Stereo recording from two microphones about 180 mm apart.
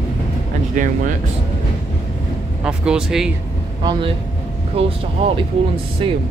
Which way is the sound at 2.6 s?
5° right (ahead or behind).